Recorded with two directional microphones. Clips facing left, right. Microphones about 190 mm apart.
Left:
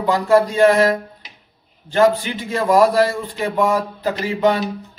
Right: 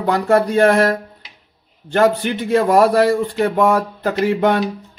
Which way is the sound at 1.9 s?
60° right (ahead or behind).